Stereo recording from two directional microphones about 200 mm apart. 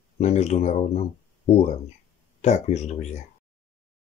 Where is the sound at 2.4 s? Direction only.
35° left (ahead or behind).